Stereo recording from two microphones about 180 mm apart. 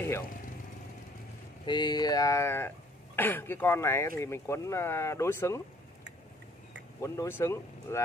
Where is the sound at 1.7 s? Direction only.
25° left (ahead or behind).